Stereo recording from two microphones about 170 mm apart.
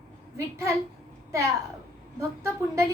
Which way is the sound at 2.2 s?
15° right (ahead or behind).